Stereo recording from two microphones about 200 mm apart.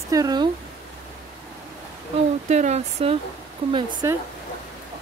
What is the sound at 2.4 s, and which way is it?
Speech, 35° right (ahead or behind).